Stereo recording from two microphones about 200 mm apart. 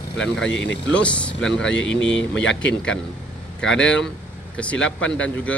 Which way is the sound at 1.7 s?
65° left (ahead or behind).